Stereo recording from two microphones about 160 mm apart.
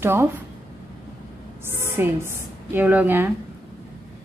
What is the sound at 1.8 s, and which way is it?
A woman's voice, 15° right (ahead or behind).